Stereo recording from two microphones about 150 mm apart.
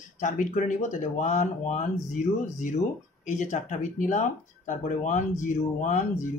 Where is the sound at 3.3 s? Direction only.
55° left (ahead or behind).